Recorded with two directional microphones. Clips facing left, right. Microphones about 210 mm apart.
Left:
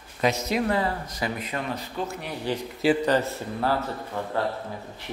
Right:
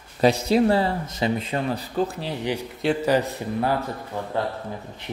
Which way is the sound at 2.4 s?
10° right (ahead or behind).